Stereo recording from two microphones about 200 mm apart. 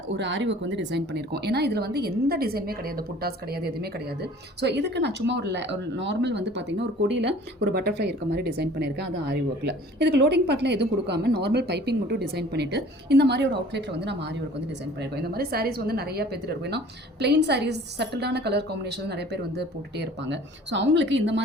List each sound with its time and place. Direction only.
0.2 s speech: 65° right (ahead or behind)